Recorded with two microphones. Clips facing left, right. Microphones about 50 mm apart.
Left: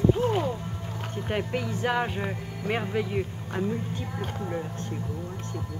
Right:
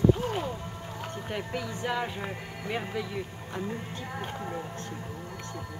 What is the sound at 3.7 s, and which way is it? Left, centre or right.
Speech, centre.